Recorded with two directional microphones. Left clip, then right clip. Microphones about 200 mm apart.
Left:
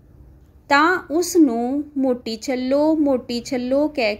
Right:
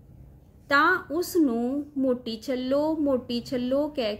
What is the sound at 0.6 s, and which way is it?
A woman's voice, 30° left (ahead or behind).